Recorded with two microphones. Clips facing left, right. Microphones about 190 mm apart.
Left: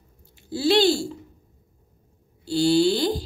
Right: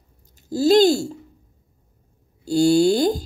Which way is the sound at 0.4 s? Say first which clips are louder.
Right 5 dB; 40° right (ahead or behind).